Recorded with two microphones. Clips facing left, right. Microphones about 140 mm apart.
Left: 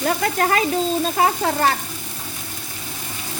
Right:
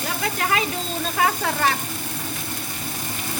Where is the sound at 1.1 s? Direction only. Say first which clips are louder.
Left 3 dB; 30° left (ahead or behind).